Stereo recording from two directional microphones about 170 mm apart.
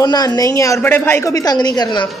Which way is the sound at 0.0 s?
25° left (ahead or behind).